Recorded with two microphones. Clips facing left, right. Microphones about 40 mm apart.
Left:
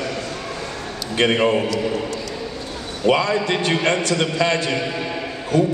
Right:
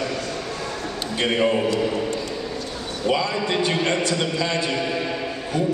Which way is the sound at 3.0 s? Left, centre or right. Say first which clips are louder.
Left 5 dB; left.